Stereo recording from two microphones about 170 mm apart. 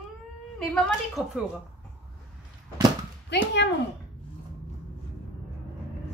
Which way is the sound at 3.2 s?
90° left.